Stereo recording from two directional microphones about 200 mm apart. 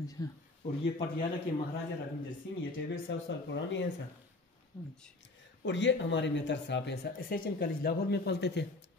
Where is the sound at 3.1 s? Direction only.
65° left (ahead or behind).